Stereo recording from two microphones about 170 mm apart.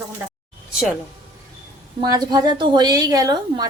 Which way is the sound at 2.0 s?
20° right (ahead or behind).